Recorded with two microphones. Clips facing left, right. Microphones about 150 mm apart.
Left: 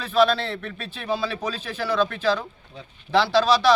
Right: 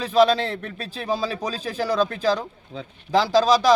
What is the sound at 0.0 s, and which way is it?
A man's voice, 35° right (ahead or behind).